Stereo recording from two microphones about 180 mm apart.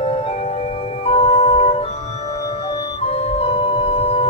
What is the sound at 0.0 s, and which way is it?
Music, 35° left (ahead or behind).